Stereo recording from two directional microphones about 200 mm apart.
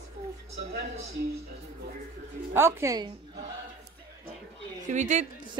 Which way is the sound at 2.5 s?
15° right (ahead or behind).